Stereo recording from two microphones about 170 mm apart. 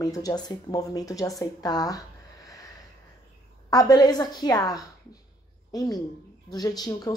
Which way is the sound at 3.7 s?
20° left (ahead or behind).